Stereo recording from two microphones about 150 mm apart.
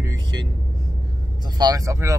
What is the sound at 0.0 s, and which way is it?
Vehicle, 25° right (ahead or behind).